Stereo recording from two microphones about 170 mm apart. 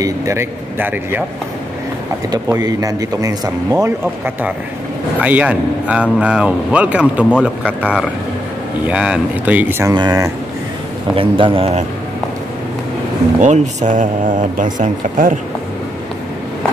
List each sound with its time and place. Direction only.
0.0 s speech: 15° right (ahead or behind)
2.3 s a man's voice: 20° right (ahead or behind)
13.4 s speech: 45° right (ahead or behind)